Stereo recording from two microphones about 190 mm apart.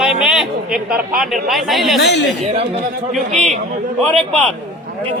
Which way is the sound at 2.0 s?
60° left (ahead or behind).